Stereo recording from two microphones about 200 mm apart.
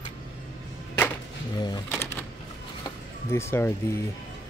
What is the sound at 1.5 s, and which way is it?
Speech, 20° left (ahead or behind).